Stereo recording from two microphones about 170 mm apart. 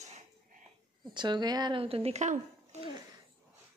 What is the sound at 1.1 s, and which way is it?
Speech, 25° right (ahead or behind).